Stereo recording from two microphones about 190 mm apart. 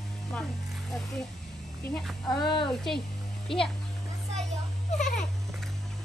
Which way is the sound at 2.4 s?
25° left (ahead or behind).